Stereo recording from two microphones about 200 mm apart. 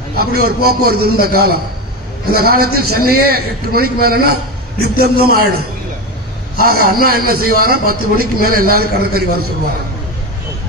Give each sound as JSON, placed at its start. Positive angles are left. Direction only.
{"t": 0.2, "sound": "a man's voice", "side_deg": -50}
{"t": 6.6, "sound": "a man's voice", "side_deg": -50}